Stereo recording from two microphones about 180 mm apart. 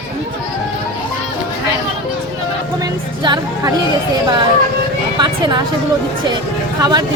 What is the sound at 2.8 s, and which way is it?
Music, 20° right (ahead or behind).